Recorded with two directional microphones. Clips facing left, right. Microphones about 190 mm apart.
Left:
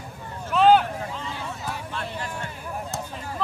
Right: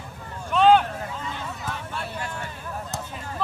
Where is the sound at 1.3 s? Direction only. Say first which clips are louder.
Left 1 dB; 10° left (ahead or behind).